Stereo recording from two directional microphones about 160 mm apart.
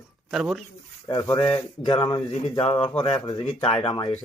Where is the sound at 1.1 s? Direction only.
20° left (ahead or behind).